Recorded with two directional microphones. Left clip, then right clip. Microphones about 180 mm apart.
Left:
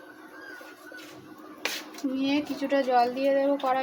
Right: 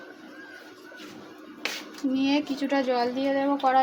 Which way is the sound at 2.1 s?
40° right (ahead or behind).